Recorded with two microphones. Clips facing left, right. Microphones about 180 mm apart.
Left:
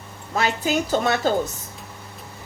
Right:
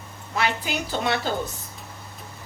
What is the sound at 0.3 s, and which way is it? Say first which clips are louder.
Speech: left 4 dB; 45° left (ahead or behind).